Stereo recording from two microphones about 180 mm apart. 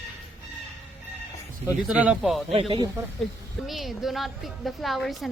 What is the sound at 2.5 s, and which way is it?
Speech, 30° right (ahead or behind).